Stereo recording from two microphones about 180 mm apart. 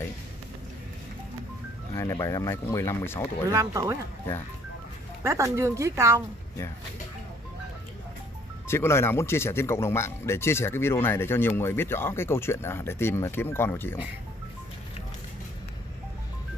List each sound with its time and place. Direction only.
2.0 s speech: 15° left (ahead or behind)
3.4 s speech: 20° right (ahead or behind)
5.2 s speech: 15° right (ahead or behind)
8.6 s speech: 15° left (ahead or behind)